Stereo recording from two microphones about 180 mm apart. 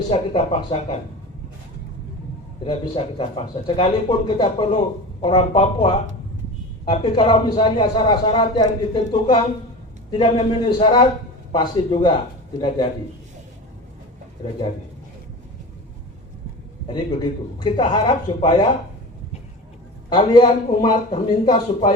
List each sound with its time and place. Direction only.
0.1 s speech: 30° left (ahead or behind)
2.6 s a man's voice: 30° left (ahead or behind)
17.6 s a man's voice: 25° left (ahead or behind)
20.1 s a man's voice: 25° left (ahead or behind)